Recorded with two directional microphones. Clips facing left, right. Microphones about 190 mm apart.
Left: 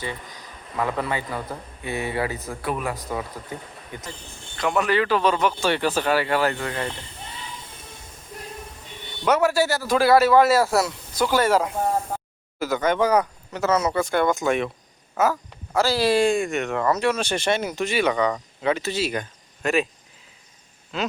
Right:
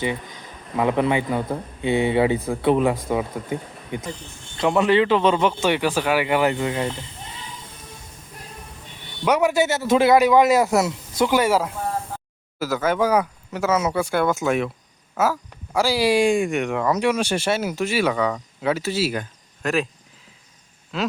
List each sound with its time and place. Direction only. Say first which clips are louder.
0.8 s a man's voice: right 6 dB; 20° right (ahead or behind)
4.5 s speech: right 4 dB; 25° right (ahead or behind)
9.2 s a man's voice: right 1 dB; 15° right (ahead or behind)
11.3 s speech: left 3 dB; 10° right (ahead or behind)
20.9 s a sound: right 2 dB; centre (ahead or behind)